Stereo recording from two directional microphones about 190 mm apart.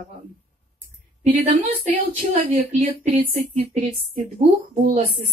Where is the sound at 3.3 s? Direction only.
35° right (ahead or behind).